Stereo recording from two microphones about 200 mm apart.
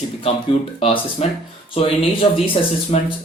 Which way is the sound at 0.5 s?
30° left (ahead or behind).